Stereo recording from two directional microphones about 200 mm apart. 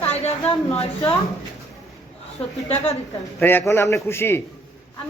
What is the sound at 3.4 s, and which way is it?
A man's voice, 10° left (ahead or behind).